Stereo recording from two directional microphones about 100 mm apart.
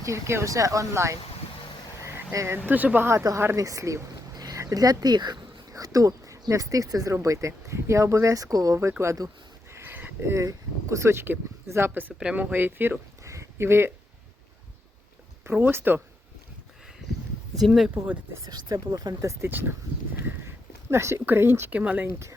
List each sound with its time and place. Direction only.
0.0 s speech: 30° right (ahead or behind)
2.0 s frog: 30° right (ahead or behind)
2.6 s speech: 15° right (ahead or behind)
13.2 s a sound: 30° right (ahead or behind)
15.5 s speech: 20° right (ahead or behind)
17.6 s speech: centre (ahead or behind)
18.4 s speech: 40° right (ahead or behind)
19.4 s speech: 20° right (ahead or behind)
20.9 s speech: 25° right (ahead or behind)